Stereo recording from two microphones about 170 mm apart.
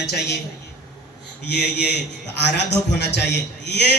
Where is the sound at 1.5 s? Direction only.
80° left.